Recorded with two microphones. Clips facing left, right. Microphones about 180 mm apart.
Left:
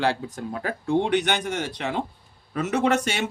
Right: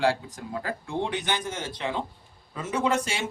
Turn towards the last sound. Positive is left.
turn(degrees=70)  # may be behind; listen again after turning